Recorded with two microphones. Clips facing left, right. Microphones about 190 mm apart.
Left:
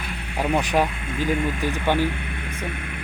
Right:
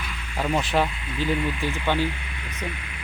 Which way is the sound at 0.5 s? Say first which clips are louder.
Left 2 dB; 15° left (ahead or behind).